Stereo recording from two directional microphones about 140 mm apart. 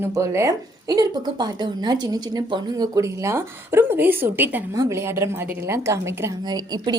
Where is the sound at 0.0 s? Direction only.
20° right (ahead or behind).